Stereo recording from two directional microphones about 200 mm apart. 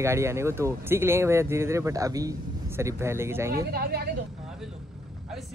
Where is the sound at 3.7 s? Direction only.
50° right (ahead or behind).